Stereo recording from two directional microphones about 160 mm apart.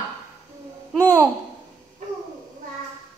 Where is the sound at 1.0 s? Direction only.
20° right (ahead or behind).